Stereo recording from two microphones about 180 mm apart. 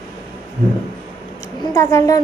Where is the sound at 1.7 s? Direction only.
15° left (ahead or behind).